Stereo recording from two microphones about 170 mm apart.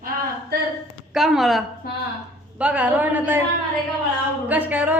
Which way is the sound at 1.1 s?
Centre (ahead or behind).